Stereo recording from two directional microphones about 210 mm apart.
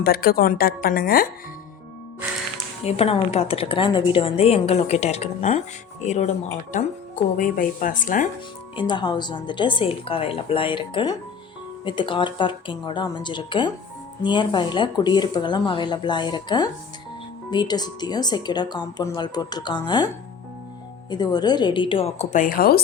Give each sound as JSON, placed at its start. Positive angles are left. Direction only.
{"t": 0.0, "sound": "speech", "side_deg": 45}
{"t": 2.8, "sound": "a woman's voice", "side_deg": 30}
{"t": 7.3, "sound": "speech", "side_deg": 40}
{"t": 8.7, "sound": "a woman's voice", "side_deg": 20}
{"t": 21.1, "sound": "a woman's voice", "side_deg": 20}